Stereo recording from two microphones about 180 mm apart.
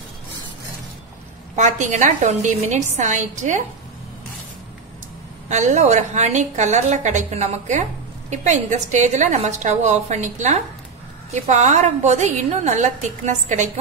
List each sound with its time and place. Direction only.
1.5 s a woman's voice: 40° right (ahead or behind)
5.5 s a woman's voice: 40° right (ahead or behind)